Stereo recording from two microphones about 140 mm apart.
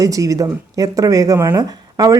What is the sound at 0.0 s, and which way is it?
Speech, 25° right (ahead or behind).